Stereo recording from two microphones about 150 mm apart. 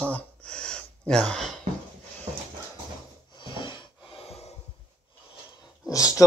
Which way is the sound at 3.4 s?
30° left (ahead or behind).